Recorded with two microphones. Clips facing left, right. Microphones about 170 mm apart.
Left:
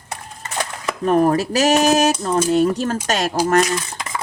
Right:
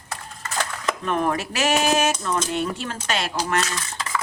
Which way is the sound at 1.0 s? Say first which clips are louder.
Left 9 dB; 40° left (ahead or behind).